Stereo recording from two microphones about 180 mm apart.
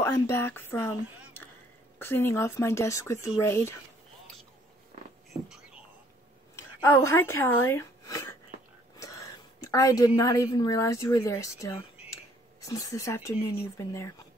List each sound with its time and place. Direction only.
0.0 s speech: 15° left (ahead or behind)
2.0 s speech: 10° left (ahead or behind)
5.3 s whispering: 5° right (ahead or behind)
6.5 s a woman's voice: 15° left (ahead or behind)